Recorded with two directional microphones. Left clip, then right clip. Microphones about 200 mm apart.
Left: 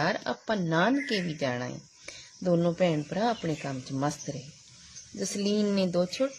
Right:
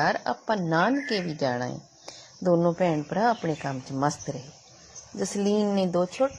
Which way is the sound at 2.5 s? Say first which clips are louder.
Right 2 dB; centre (ahead or behind).